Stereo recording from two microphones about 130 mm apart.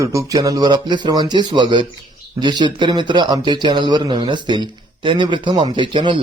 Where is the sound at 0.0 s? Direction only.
25° right (ahead or behind).